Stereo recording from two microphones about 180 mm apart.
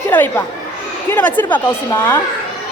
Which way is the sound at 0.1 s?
10° left (ahead or behind).